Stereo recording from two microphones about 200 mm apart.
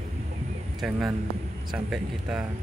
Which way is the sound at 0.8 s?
5° right (ahead or behind).